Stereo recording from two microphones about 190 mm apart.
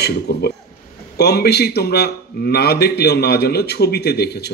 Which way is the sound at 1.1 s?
60° left (ahead or behind).